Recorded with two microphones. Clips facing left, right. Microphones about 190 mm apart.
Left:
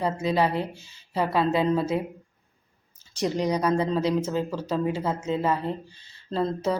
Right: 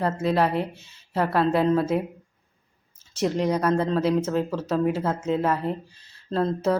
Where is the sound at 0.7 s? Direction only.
30° left (ahead or behind).